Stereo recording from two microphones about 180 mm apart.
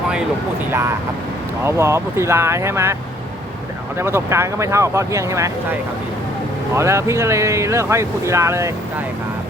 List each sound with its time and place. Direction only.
0.7 s speech: 15° right (ahead or behind)
3.9 s speech: 15° right (ahead or behind)
6.7 s speech: 15° right (ahead or behind)